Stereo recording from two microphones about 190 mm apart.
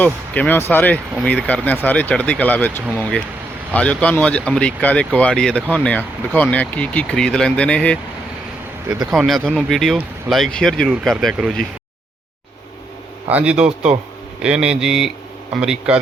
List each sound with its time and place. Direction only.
0.0 s speech: 10° left (ahead or behind)
9.0 s speech: centre (ahead or behind)
13.2 s speech: 5° right (ahead or behind)
13.7 s speech: 35° right (ahead or behind)
14.4 s speech: 5° right (ahead or behind)